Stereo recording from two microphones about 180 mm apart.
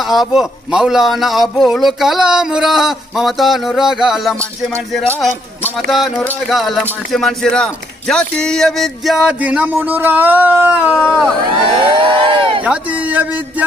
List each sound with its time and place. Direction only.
0.0 s a man's voice: centre (ahead or behind)
11.8 s speech: 30° right (ahead or behind)
12.6 s a man's voice: 5° right (ahead or behind)